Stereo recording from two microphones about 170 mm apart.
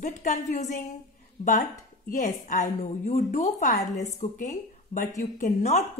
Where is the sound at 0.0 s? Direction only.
45° left (ahead or behind).